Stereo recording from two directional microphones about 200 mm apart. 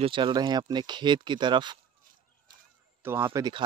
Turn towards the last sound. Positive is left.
turn(degrees=-20)  # may be behind; listen again after turning